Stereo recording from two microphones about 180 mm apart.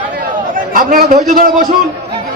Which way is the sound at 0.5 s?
50° right (ahead or behind).